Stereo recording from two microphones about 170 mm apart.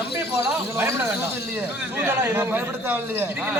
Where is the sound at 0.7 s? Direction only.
15° right (ahead or behind).